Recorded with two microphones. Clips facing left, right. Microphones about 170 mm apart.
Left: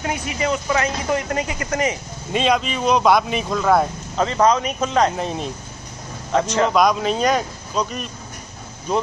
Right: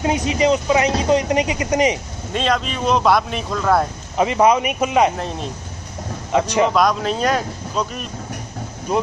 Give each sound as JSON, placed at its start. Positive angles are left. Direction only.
{"t": 0.0, "sound": "speech", "side_deg": -20}
{"t": 2.3, "sound": "speech", "side_deg": 0}
{"t": 4.2, "sound": "speech", "side_deg": -10}
{"t": 5.1, "sound": "speech", "side_deg": 0}
{"t": 6.3, "sound": "speech", "side_deg": -15}
{"t": 6.7, "sound": "speech", "side_deg": 0}